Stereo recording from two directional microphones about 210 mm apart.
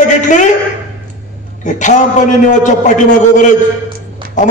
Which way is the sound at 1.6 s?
35° left (ahead or behind).